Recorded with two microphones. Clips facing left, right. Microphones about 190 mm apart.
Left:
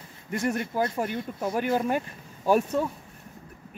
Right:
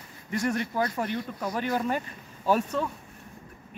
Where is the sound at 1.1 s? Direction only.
25° left (ahead or behind).